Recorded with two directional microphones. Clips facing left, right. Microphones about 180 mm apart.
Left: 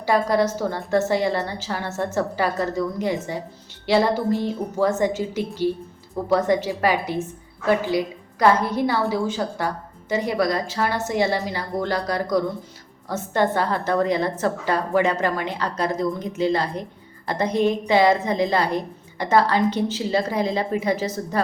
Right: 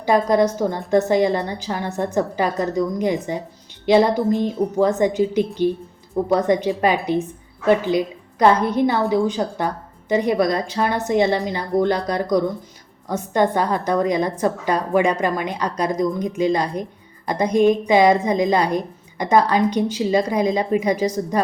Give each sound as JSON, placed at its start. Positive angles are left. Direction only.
{"t": 0.0, "sound": "a woman's voice", "side_deg": -20}